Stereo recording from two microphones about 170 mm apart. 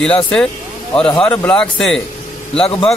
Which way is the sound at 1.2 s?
10° left (ahead or behind).